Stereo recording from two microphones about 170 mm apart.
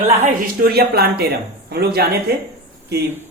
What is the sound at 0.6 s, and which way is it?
Speech, 65° right (ahead or behind).